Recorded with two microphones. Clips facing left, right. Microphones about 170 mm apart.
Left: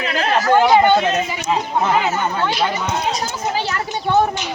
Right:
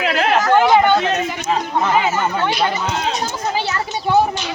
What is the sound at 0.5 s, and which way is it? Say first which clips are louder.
Speech: left 1 dB; centre (ahead or behind).